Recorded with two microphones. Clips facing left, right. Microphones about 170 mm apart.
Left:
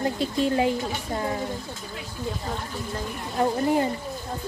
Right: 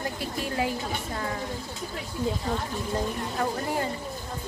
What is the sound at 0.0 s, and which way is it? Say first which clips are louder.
A woman's voice: left 7 dB; 25° left (ahead or behind).